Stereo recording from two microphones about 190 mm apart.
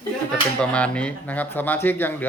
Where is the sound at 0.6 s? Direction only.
5° left (ahead or behind).